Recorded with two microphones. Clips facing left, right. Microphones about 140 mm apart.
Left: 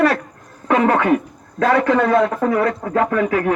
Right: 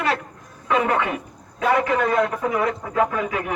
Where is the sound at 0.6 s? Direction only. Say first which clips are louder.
Left 5 dB; 70° left (ahead or behind).